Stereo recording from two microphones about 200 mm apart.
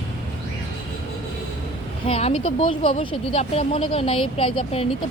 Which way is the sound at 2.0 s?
30° left (ahead or behind).